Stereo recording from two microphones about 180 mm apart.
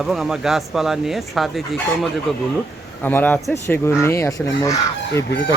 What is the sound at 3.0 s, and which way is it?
Speech, 10° left (ahead or behind).